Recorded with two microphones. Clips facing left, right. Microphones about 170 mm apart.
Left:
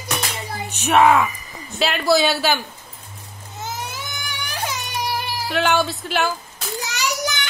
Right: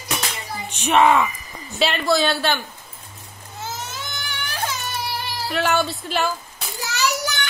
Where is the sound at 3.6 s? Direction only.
10° left (ahead or behind).